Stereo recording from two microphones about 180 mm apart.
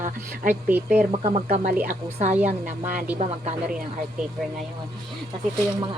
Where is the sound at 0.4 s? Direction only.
10° right (ahead or behind).